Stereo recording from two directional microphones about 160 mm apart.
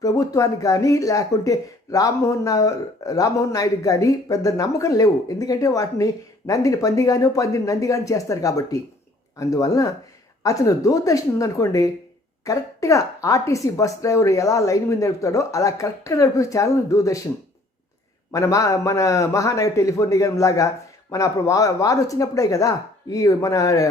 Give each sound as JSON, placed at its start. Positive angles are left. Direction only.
{"t": 0.0, "sound": "speech", "side_deg": 20}
{"t": 18.3, "sound": "speech", "side_deg": 20}